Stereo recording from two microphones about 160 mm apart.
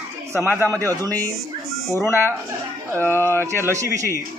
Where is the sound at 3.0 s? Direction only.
15° left (ahead or behind).